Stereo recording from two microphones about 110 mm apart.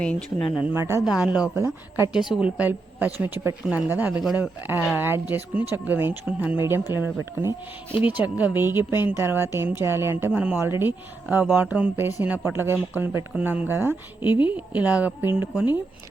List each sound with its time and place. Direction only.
0.0 s speech: 5° left (ahead or behind)
0.6 s a woman's voice: 20° right (ahead or behind)
1.0 s speech: 10° right (ahead or behind)
1.5 s a woman's voice: 25° right (ahead or behind)
2.1 s a woman's voice: 5° right (ahead or behind); by 10.3 s 20° right (ahead or behind)
10.3 s speech: 10° right (ahead or behind)
10.6 s a woman's voice: 20° right (ahead or behind)